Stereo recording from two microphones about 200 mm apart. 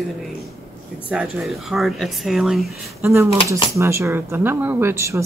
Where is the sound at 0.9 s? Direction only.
5° right (ahead or behind).